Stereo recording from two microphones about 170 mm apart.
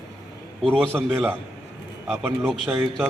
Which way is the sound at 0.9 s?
10° right (ahead or behind).